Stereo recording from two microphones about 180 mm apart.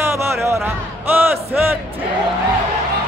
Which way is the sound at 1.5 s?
5° right (ahead or behind).